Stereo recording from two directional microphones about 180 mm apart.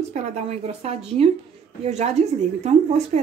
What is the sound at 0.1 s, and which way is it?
A woman's voice, 40° right (ahead or behind).